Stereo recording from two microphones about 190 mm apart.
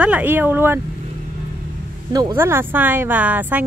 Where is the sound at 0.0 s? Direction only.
10° right (ahead or behind).